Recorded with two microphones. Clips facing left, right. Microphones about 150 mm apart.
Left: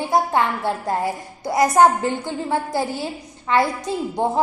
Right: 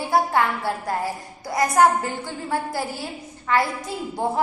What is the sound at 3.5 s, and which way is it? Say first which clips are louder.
Speech: left 3 dB; 25° left (ahead or behind).